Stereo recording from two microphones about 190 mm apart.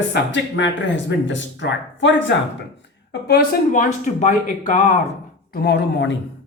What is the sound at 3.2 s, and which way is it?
Speech, 55° left (ahead or behind).